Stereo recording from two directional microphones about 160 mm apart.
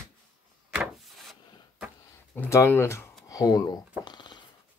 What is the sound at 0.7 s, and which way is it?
Wood, centre (ahead or behind).